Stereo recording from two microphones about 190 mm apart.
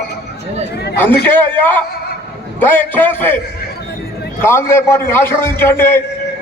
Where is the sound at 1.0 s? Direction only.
10° left (ahead or behind).